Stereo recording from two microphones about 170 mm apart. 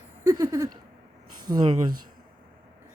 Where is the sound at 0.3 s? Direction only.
20° right (ahead or behind).